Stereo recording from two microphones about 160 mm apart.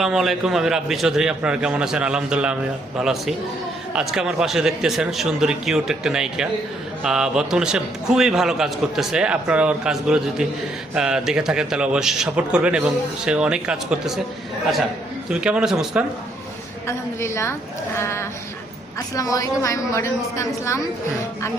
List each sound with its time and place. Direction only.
0.0 s a man's voice: centre (ahead or behind)
15.3 s a man's voice: 5° right (ahead or behind)
16.8 s a woman's voice: 15° left (ahead or behind)